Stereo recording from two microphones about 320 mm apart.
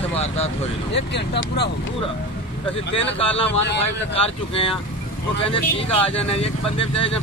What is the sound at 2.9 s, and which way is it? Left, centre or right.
Speech, centre.